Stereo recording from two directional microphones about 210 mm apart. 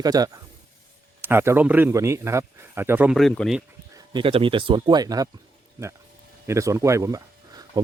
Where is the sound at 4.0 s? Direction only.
25° right (ahead or behind).